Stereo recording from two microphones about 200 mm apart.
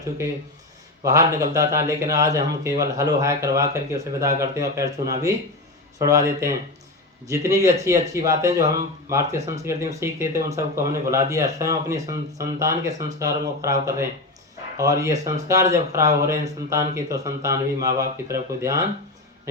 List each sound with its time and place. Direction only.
1.0 s speech: 15° right (ahead or behind)